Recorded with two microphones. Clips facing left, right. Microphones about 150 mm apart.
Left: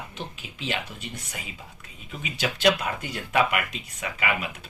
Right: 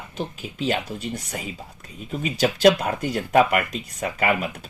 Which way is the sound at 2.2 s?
40° right (ahead or behind).